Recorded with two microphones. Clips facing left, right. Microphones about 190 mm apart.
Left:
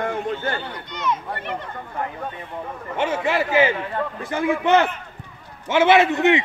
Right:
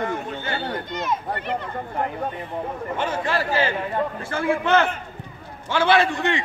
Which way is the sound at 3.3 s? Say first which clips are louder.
Left 5 dB; 20° left (ahead or behind).